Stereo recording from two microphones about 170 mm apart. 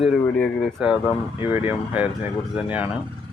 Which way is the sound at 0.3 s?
5° left (ahead or behind).